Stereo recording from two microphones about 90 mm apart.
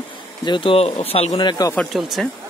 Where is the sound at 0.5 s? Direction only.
65° left (ahead or behind).